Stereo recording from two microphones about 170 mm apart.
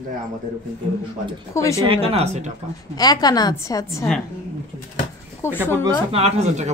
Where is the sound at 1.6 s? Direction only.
20° left (ahead or behind).